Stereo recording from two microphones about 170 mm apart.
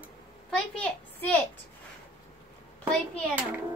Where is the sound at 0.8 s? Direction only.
5° left (ahead or behind).